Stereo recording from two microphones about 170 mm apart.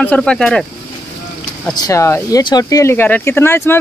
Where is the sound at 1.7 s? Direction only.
20° left (ahead or behind).